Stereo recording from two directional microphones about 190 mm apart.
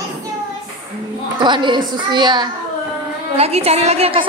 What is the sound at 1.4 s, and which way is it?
A woman's voice, 25° right (ahead or behind).